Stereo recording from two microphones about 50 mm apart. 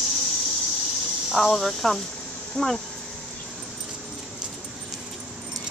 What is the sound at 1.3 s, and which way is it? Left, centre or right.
Speech, centre.